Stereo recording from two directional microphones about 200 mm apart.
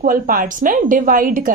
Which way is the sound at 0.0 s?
45° right (ahead or behind).